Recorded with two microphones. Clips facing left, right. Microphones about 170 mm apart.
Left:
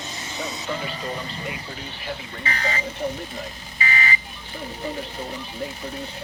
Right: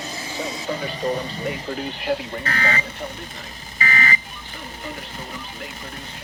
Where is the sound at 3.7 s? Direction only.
45° right (ahead or behind).